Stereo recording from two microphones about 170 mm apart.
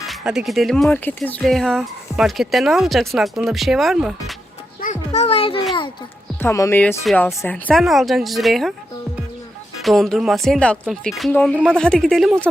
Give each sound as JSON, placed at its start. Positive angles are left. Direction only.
{"t": 0.1, "sound": "speech", "side_deg": 0}
{"t": 4.8, "sound": "a child's voice", "side_deg": 45}
{"t": 6.4, "sound": "speech", "side_deg": 15}
{"t": 9.8, "sound": "speech", "side_deg": 0}